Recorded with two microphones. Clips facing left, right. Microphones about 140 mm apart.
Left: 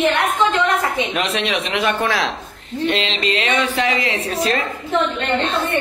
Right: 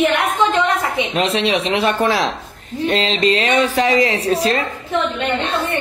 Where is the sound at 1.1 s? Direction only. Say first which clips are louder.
Right 4 dB; 30° right (ahead or behind).